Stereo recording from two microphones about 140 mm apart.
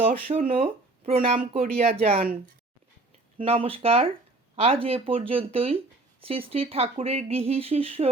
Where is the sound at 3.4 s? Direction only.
40° right (ahead or behind).